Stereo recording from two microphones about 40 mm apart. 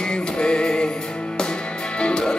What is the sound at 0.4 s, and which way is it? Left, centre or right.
Music, left.